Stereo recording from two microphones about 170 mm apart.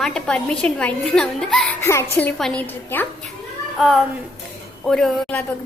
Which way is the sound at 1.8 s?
15° left (ahead or behind).